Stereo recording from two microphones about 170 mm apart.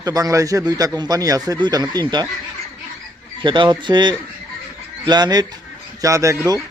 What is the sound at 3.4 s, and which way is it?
A man's voice, 30° right (ahead or behind).